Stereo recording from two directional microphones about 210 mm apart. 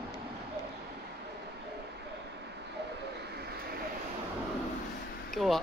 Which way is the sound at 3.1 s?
50° right (ahead or behind).